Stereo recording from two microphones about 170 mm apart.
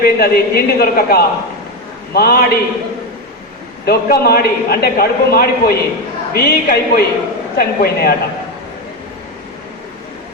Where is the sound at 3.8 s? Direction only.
65° left (ahead or behind).